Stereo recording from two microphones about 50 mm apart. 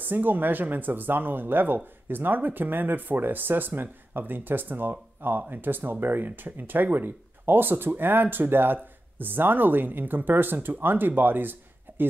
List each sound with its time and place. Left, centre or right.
0.1 s speech: right